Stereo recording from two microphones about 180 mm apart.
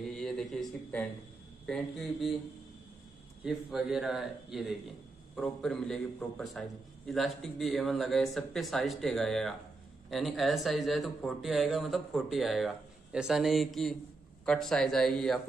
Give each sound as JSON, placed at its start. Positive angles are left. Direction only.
{"t": 0.0, "sound": "a sound", "side_deg": 0}
{"t": 1.7, "sound": "speech", "side_deg": 0}
{"t": 3.4, "sound": "speech", "side_deg": 0}